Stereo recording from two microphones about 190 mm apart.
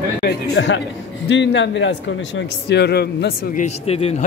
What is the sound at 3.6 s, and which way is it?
Speech, 30° left (ahead or behind).